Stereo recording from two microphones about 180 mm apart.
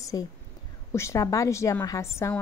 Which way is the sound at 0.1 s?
20° left (ahead or behind).